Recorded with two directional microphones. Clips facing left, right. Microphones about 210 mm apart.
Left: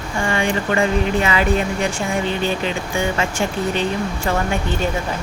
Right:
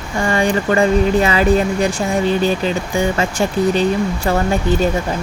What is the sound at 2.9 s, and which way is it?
Speech, 40° right (ahead or behind).